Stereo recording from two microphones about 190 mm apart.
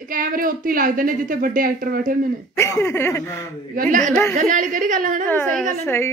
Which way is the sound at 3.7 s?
45° right (ahead or behind).